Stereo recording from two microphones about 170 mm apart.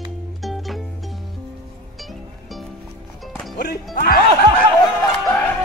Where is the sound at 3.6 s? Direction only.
65° left (ahead or behind).